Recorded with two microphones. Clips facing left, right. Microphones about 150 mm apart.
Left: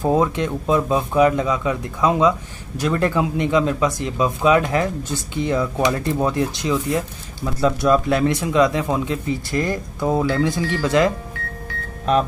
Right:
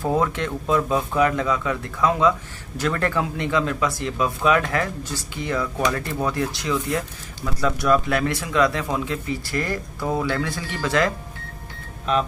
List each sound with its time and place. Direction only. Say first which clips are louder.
0.0 s speech: left 4 dB; 20° left (ahead or behind)